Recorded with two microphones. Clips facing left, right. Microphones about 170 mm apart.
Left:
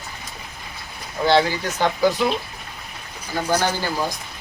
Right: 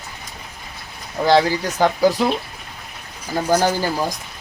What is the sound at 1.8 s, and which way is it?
Speech, 40° right (ahead or behind).